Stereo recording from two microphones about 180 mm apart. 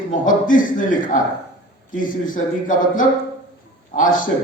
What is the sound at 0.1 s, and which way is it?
A man's voice, 50° left (ahead or behind).